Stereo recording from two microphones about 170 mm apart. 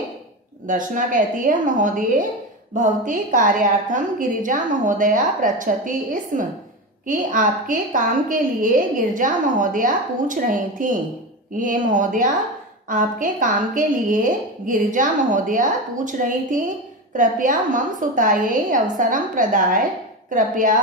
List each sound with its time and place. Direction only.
0.7 s a woman's voice: 50° right (ahead or behind)